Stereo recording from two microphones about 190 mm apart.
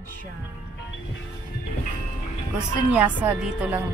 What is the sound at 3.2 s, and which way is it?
Speech, 10° right (ahead or behind).